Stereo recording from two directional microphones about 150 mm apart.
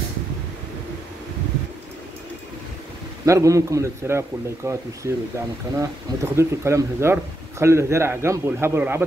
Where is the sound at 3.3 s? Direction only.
20° right (ahead or behind).